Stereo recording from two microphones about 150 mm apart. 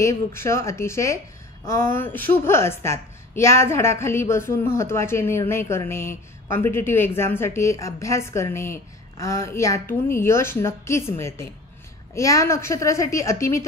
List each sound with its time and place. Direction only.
0.0 s a woman's voice: 20° left (ahead or behind)